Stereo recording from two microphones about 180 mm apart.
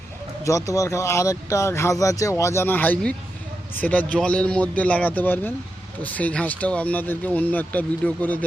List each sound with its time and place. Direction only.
0.4 s speech: 20° left (ahead or behind)